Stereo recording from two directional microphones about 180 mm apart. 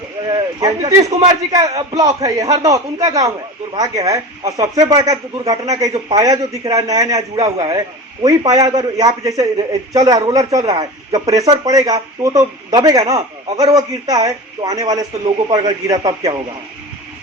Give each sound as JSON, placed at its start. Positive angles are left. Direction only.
{"t": 0.3, "sound": "speech", "side_deg": -25}